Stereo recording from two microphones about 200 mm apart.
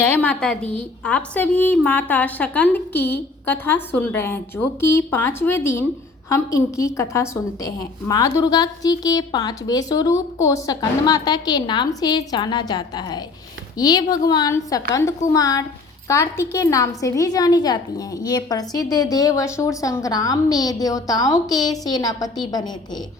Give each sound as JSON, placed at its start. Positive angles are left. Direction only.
{"t": 0.0, "sound": "a woman's voice", "side_deg": 10}